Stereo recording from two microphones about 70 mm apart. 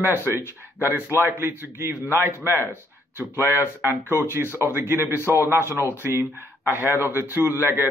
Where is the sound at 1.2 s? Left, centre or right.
Right.